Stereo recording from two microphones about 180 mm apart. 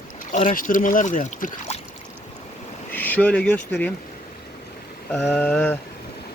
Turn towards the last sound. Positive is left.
turn(degrees=10)  # may be behind; listen again after turning